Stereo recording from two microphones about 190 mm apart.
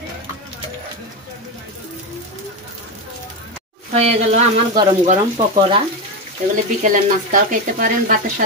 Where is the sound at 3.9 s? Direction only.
35° right (ahead or behind).